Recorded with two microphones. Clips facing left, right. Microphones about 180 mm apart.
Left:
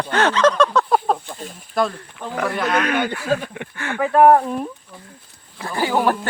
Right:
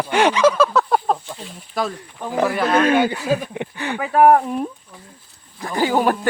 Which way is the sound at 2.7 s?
30° right (ahead or behind).